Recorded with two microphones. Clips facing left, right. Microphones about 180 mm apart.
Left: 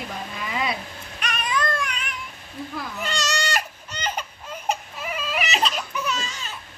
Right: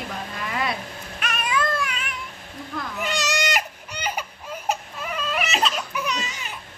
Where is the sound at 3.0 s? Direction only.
15° right (ahead or behind).